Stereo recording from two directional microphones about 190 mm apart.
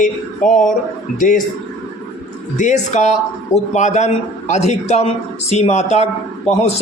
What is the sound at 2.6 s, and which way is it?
A man's voice, 40° left (ahead or behind).